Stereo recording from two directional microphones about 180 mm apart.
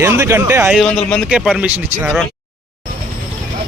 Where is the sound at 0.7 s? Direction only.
5° left (ahead or behind).